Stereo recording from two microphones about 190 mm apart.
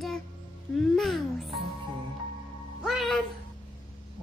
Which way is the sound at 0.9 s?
Centre (ahead or behind).